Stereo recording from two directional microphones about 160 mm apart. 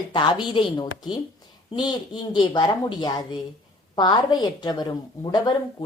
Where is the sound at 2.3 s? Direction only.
25° left (ahead or behind).